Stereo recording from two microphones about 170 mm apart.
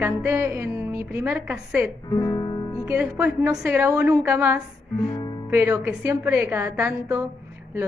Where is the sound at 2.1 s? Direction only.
20° left (ahead or behind).